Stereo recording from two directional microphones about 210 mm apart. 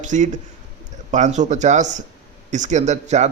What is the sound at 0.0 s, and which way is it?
A man's voice, 35° right (ahead or behind).